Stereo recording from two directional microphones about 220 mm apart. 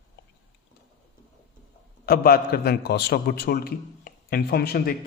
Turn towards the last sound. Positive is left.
turn(degrees=45)  # may be behind; listen again after turning